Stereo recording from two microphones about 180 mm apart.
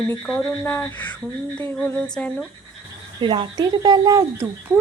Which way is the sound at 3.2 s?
25° right (ahead or behind).